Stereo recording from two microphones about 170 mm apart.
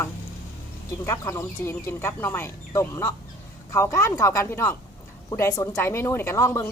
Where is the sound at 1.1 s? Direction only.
15° left (ahead or behind).